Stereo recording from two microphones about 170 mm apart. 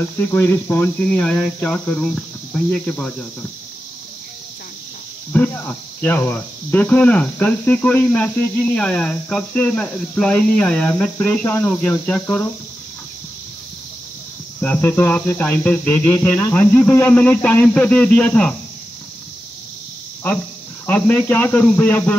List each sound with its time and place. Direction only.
0.0 s speech: 15° left (ahead or behind)
5.5 s speech: 10° left (ahead or behind)
14.6 s speech: 10° left (ahead or behind)
20.8 s speech: 10° left (ahead or behind)